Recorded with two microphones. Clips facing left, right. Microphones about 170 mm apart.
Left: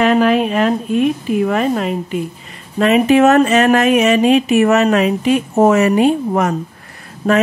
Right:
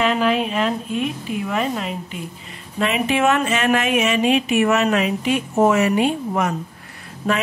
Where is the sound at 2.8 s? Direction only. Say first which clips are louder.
Left 9 dB; 40° left (ahead or behind).